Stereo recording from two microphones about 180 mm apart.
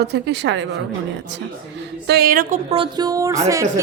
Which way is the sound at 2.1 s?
55° right (ahead or behind).